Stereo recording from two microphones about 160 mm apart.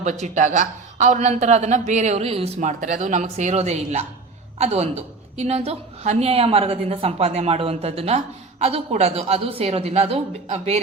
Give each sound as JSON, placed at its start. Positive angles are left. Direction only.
{"t": 0.0, "sound": "a woman's voice", "side_deg": -50}